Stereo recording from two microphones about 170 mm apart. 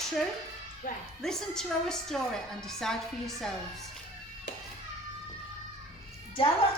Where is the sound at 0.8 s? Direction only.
50° left (ahead or behind).